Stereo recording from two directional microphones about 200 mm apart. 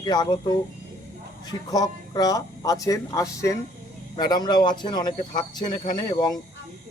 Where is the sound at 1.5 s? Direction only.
20° left (ahead or behind).